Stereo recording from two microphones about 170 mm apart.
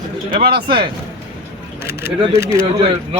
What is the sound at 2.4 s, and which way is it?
Speech, 15° right (ahead or behind).